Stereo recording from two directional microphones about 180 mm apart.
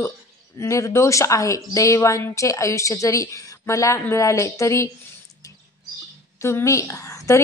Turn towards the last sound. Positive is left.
turn(degrees=15)  # may be behind; listen again after turning